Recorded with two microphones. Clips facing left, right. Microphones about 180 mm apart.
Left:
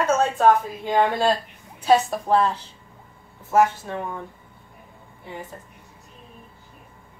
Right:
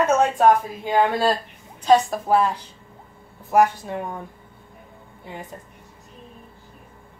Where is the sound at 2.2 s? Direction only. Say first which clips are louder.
Even; 10° right (ahead or behind).